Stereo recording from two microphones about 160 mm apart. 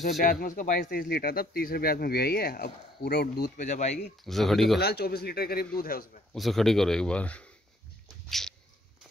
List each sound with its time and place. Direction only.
0.2 s speech: 60° left (ahead or behind)
3.6 s speech: 45° left (ahead or behind)
4.2 s speech: centre (ahead or behind)
4.7 s speech: 90° left; by 6.0 s 65° left (ahead or behind)
6.3 s speech: centre (ahead or behind)
8.3 s a sound: centre (ahead or behind)